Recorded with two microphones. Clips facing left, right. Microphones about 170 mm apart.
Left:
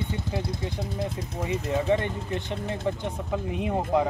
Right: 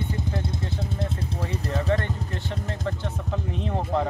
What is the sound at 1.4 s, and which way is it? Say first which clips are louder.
Speech: left 4 dB; 15° left (ahead or behind).